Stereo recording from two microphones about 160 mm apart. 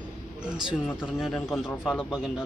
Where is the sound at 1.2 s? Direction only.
5° left (ahead or behind).